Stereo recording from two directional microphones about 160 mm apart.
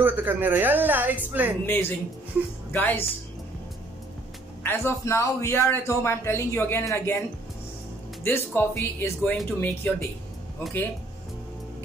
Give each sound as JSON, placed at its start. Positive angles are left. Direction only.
{"t": 0.0, "sound": "a woman's voice", "side_deg": -10}
{"t": 1.7, "sound": "a man's voice", "side_deg": 15}
{"t": 4.6, "sound": "a man's voice", "side_deg": 15}